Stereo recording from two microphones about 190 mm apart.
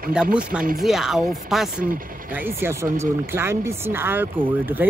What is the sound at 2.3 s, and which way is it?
Speech, 10° right (ahead or behind).